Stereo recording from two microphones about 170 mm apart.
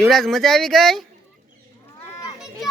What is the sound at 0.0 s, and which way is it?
Speech, centre (ahead or behind).